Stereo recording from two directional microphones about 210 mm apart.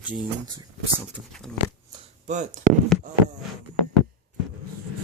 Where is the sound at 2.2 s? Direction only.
35° right (ahead or behind).